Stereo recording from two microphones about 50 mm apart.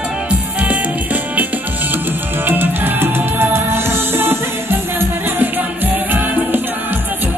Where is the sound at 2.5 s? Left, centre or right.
Right.